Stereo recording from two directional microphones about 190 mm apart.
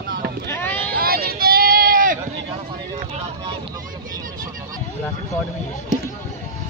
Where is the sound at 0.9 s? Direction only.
50° right (ahead or behind).